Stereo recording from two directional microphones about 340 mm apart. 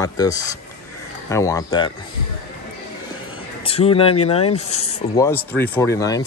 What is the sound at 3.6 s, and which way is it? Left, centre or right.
Speech, centre.